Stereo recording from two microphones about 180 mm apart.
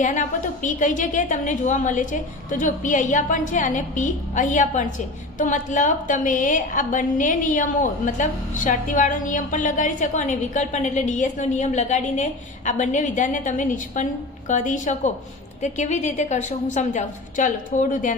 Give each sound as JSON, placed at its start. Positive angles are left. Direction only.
{"t": 0.0, "sound": "a woman's voice", "side_deg": 45}